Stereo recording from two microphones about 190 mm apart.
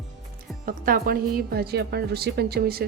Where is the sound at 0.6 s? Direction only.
50° right (ahead or behind).